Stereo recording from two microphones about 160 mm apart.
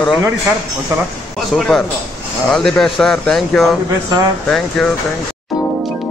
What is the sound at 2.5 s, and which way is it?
A man's voice, centre (ahead or behind).